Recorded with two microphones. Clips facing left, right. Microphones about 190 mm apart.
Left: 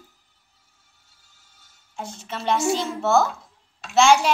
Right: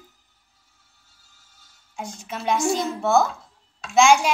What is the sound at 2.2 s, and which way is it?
Speech, 5° right (ahead or behind).